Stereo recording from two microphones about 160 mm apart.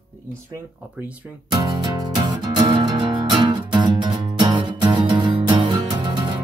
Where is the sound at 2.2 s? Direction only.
25° right (ahead or behind).